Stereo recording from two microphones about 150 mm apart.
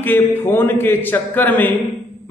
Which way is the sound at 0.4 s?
15° left (ahead or behind).